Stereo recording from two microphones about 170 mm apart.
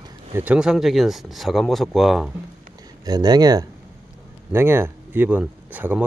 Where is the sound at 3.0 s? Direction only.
25° right (ahead or behind).